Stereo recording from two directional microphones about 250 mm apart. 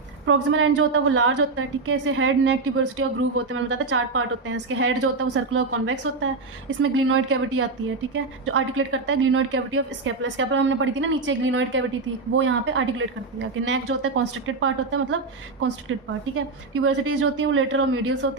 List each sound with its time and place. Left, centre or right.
0.3 s a woman's voice: right
16.8 s a woman's voice: right